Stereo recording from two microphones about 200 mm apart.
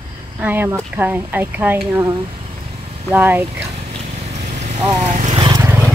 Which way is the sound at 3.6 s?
30° right (ahead or behind).